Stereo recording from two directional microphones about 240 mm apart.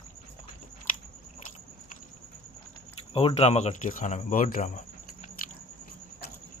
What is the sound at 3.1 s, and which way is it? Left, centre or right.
Speech, left.